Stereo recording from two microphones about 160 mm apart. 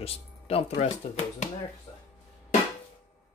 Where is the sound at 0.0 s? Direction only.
35° left (ahead or behind).